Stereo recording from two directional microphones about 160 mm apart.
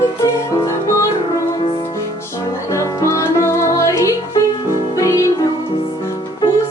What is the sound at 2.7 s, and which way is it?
Music, 20° left (ahead or behind).